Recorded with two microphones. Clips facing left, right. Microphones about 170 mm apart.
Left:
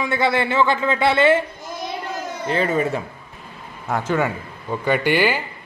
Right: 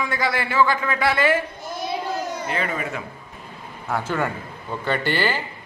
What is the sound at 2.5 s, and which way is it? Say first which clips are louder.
Speech: left 11 dB; 30° left (ahead or behind).